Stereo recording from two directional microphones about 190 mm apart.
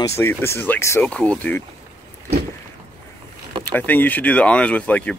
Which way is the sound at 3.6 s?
10° left (ahead or behind).